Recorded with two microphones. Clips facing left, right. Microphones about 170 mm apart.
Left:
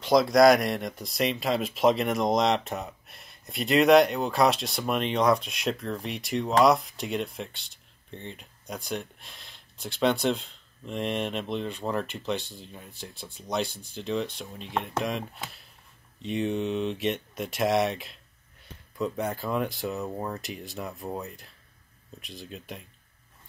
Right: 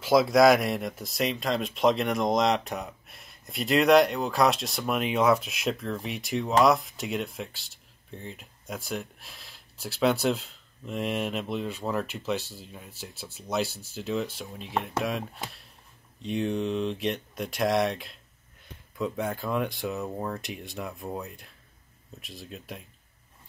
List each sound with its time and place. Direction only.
0.0 s speech: 5° right (ahead or behind)